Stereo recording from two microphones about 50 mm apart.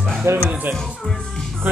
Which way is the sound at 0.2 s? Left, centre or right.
Right.